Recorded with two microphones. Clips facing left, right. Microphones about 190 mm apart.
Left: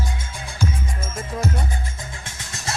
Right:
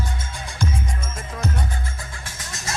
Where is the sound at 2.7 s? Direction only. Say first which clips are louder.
Left 1 dB; 30° left (ahead or behind).